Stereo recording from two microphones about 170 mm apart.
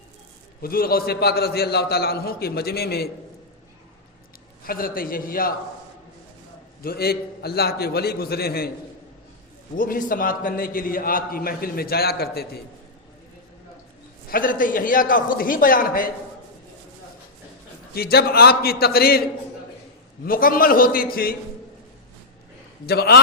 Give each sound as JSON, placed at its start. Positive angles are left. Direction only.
{"t": 0.6, "sound": "a man's voice", "side_deg": 60}
{"t": 4.6, "sound": "a man's voice", "side_deg": 60}
{"t": 6.8, "sound": "a man's voice", "side_deg": 65}
{"t": 9.7, "sound": "a man's voice", "side_deg": 55}
{"t": 14.3, "sound": "a man's voice", "side_deg": 55}
{"t": 17.9, "sound": "a man's voice", "side_deg": 65}
{"t": 20.2, "sound": "a man's voice", "side_deg": 55}
{"t": 22.9, "sound": "a man's voice", "side_deg": 70}